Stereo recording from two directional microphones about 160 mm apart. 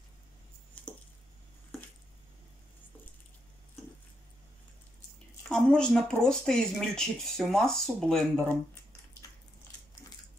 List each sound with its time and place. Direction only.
5.5 s speech: 5° left (ahead or behind)